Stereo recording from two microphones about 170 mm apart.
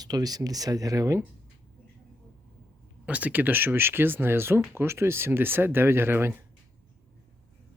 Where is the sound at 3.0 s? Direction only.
10° right (ahead or behind).